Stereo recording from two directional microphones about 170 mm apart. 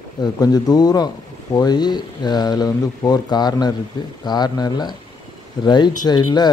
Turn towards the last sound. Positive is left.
turn(degrees=25)  # may be behind; listen again after turning